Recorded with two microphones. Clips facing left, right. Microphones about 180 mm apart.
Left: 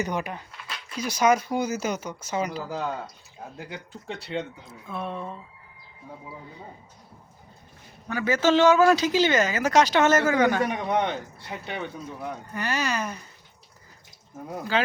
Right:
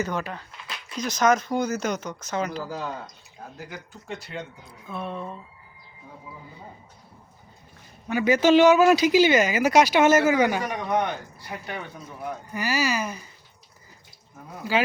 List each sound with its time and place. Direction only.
0.0 s speech: 15° left (ahead or behind)
3.7 s speech: 30° left (ahead or behind)
4.9 s speech: centre (ahead or behind)
8.0 s speech: 15° right (ahead or behind)
10.9 s speech: 25° left (ahead or behind)
12.5 s speech: 10° right (ahead or behind)
14.7 s speech: 10° right (ahead or behind)